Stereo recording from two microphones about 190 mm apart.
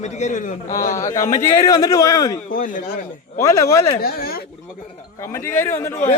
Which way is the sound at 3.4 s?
15° left (ahead or behind).